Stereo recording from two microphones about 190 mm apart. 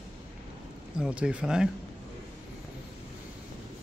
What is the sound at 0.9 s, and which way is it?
Speech, 5° right (ahead or behind).